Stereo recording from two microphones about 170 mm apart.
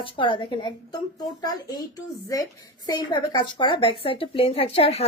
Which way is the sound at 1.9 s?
20° left (ahead or behind).